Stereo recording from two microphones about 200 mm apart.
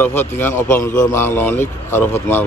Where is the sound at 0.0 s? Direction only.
10° left (ahead or behind).